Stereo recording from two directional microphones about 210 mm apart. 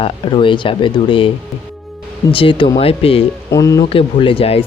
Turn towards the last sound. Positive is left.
turn(degrees=25)  # may be behind; listen again after turning